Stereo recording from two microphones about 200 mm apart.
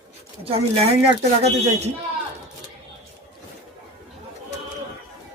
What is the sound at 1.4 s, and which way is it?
Speech, 30° right (ahead or behind).